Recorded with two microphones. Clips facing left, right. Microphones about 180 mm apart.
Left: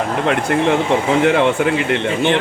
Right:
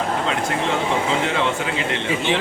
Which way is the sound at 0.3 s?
60° left (ahead or behind).